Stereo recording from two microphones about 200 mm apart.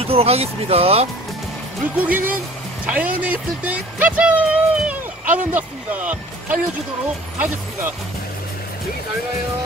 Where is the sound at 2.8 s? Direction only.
5° right (ahead or behind).